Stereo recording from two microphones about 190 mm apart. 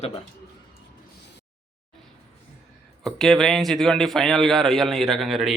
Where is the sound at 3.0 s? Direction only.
Centre (ahead or behind).